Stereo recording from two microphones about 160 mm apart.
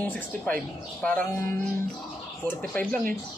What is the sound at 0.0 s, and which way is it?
Speech, 10° left (ahead or behind).